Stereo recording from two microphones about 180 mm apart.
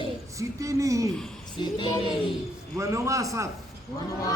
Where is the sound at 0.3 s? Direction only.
15° right (ahead or behind).